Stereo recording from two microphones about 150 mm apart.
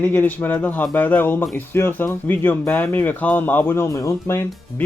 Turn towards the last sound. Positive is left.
turn(degrees=20)  # may be behind; listen again after turning